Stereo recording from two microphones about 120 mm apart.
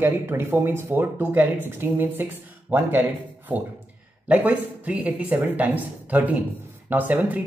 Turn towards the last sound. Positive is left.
turn(degrees=-15)  # may be behind; listen again after turning